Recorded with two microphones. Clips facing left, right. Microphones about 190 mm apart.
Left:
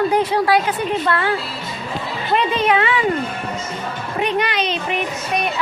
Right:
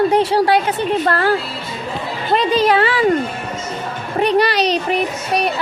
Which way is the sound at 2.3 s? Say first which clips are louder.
Right 3 dB; 35° right (ahead or behind).